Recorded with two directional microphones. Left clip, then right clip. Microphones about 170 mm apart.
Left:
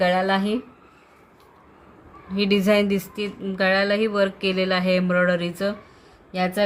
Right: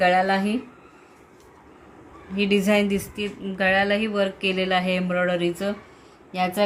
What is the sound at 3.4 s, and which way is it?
Speech, 75° left (ahead or behind).